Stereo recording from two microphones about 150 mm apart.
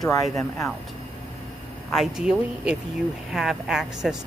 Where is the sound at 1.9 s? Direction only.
5° right (ahead or behind).